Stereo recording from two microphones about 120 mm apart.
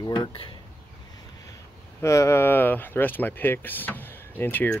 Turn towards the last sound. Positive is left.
turn(degrees=15)  # may be behind; listen again after turning